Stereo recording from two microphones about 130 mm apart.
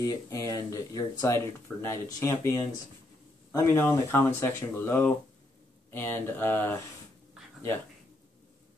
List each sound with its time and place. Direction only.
0.0 s speech: 25° left (ahead or behind)